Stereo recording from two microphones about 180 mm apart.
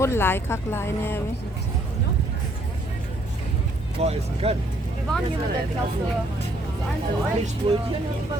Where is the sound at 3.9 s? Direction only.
35° right (ahead or behind).